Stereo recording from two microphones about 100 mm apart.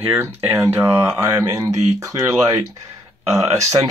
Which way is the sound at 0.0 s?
25° right (ahead or behind).